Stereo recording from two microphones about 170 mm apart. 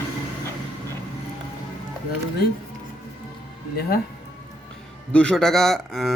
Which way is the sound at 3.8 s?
65° left (ahead or behind).